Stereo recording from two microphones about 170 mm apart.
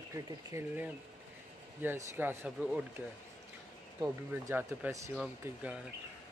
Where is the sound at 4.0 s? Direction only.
15° right (ahead or behind).